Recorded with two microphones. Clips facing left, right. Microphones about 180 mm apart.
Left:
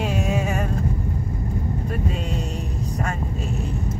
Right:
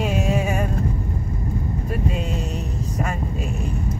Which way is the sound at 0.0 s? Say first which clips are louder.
Right 2 dB; 5° right (ahead or behind).